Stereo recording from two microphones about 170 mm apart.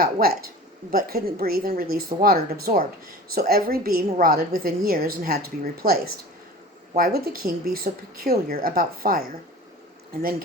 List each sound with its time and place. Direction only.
0.0 s a woman's voice: 60° right (ahead or behind)